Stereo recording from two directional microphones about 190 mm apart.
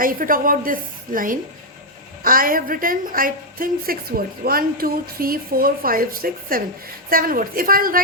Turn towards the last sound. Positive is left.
turn(degrees=-50)  # may be behind; listen again after turning